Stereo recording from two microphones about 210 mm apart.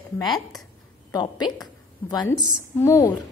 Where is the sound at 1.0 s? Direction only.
20° left (ahead or behind).